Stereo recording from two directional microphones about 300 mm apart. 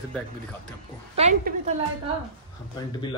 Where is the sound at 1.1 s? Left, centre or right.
Right.